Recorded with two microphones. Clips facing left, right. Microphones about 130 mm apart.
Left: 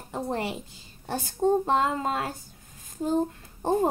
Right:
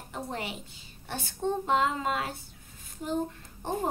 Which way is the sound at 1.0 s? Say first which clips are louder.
Left 7 dB; 40° left (ahead or behind).